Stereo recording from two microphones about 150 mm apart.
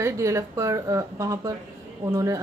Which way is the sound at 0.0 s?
20° right (ahead or behind).